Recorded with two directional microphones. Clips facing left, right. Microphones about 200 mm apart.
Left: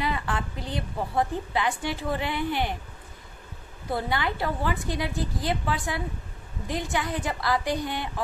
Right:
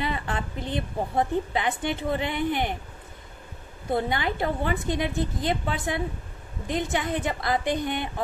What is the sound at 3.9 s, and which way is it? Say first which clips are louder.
A woman's voice: right 2 dB; 20° right (ahead or behind).